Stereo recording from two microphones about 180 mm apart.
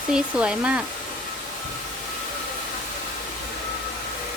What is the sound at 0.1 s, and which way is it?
Speech, 5° right (ahead or behind).